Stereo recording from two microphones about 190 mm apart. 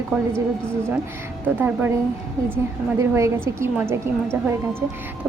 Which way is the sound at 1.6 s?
10° right (ahead or behind).